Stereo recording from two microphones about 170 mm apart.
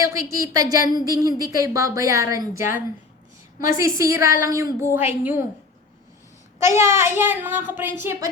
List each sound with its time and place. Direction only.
0.0 s a woman's voice: 20° right (ahead or behind)
3.8 s a woman's voice: 15° right (ahead or behind)
6.6 s a woman's voice: 15° right (ahead or behind)